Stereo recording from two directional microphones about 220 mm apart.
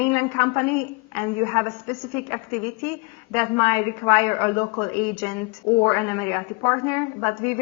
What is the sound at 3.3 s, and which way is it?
A woman's voice, 15° left (ahead or behind).